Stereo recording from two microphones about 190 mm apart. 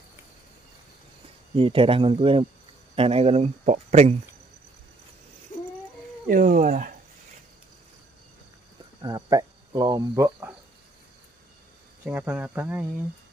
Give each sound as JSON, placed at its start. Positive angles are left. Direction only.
{"t": 1.5, "sound": "speech", "side_deg": -30}
{"t": 6.2, "sound": "speech", "side_deg": -45}
{"t": 9.0, "sound": "speech", "side_deg": -20}
{"t": 12.0, "sound": "speech", "side_deg": -10}